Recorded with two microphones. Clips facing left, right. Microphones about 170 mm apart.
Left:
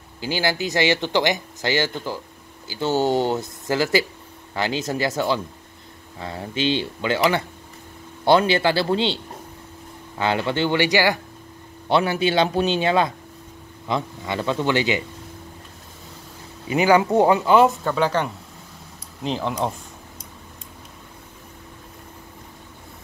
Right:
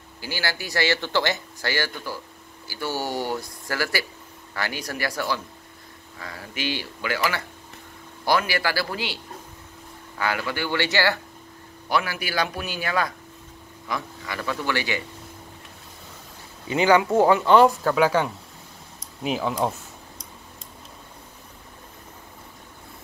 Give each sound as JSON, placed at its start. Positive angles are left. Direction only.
{"t": 0.2, "sound": "speech", "side_deg": 20}
{"t": 16.6, "sound": "speech", "side_deg": 15}
{"t": 17.5, "sound": "speech", "side_deg": 0}